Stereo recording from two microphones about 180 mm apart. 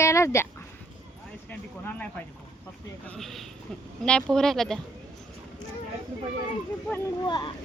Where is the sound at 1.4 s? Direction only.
10° left (ahead or behind).